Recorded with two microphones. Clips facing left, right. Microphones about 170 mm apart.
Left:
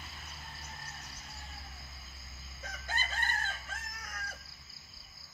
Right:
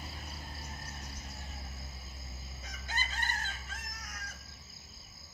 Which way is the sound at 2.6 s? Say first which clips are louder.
Left 2 dB; 50° left (ahead or behind).